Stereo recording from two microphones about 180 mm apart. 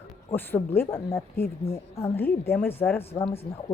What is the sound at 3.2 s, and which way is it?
Speech, 30° left (ahead or behind).